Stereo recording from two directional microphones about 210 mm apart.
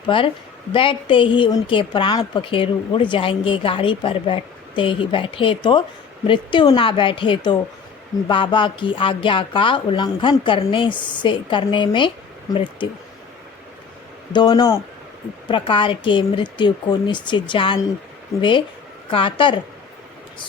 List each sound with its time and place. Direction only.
0.1 s a woman's voice: 25° left (ahead or behind)
14.3 s a woman's voice: 20° left (ahead or behind)
19.1 s a woman's voice: 25° left (ahead or behind)